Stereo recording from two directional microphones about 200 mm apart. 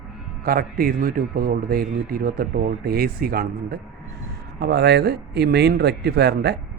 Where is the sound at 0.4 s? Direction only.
45° right (ahead or behind).